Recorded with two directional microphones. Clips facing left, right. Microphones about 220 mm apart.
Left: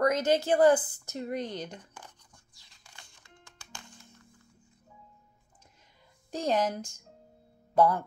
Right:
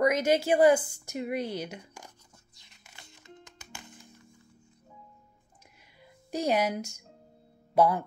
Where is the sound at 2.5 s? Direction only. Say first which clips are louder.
Right 1 dB; 20° right (ahead or behind).